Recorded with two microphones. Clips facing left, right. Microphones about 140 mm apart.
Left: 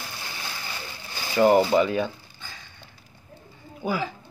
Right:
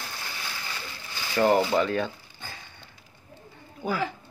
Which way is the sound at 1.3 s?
10° left (ahead or behind).